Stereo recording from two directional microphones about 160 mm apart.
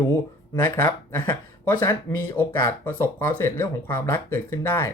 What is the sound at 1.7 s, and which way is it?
Speech, 25° left (ahead or behind).